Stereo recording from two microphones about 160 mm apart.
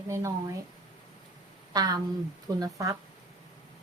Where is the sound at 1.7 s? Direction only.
25° right (ahead or behind).